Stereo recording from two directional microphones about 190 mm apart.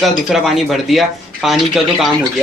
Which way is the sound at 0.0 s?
Centre (ahead or behind).